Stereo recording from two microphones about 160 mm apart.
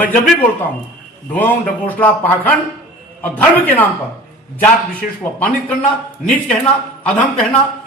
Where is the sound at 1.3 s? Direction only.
10° left (ahead or behind).